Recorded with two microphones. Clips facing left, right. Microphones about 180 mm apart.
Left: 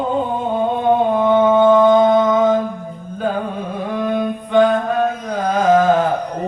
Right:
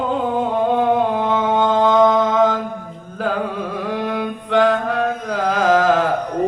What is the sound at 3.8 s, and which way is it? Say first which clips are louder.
Chant: left 5 dB; 80° right.